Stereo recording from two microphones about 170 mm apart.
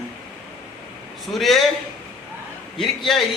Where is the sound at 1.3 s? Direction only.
Centre (ahead or behind).